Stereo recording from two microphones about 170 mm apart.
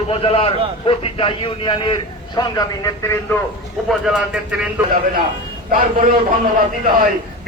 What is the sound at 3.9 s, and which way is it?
Speech, 5° right (ahead or behind).